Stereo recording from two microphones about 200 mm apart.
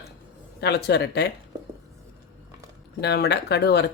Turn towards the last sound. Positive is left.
turn(degrees=55)  # may be behind; listen again after turning